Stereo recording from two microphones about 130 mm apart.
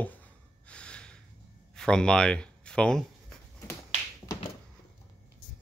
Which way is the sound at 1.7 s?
5° left (ahead or behind).